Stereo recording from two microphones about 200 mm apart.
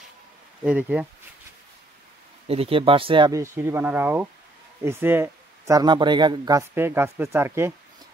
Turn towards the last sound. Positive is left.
turn(degrees=-10)  # may be behind; listen again after turning